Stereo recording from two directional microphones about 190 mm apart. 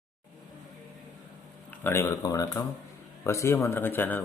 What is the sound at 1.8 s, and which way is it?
Speech, 15° left (ahead or behind).